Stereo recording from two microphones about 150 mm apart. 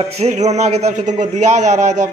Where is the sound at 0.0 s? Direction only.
45° right (ahead or behind).